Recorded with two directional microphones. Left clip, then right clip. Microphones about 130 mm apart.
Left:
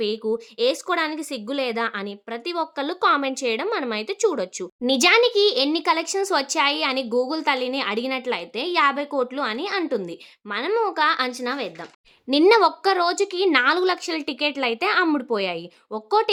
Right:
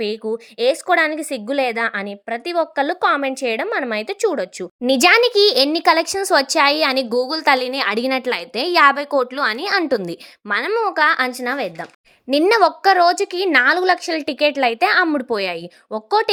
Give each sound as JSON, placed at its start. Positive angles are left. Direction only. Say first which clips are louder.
{"t": 0.0, "sound": "speech", "louder": "right 1 dB", "side_deg": -20}
{"t": 4.9, "sound": "speech", "louder": "right 4 dB", "side_deg": -35}
{"t": 10.8, "sound": "speech", "louder": "right 5 dB", "side_deg": -35}
{"t": 12.5, "sound": "speech", "louder": "right 3 dB", "side_deg": -20}